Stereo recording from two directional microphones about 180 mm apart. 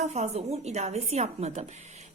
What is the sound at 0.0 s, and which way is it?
A woman's voice, 35° right (ahead or behind).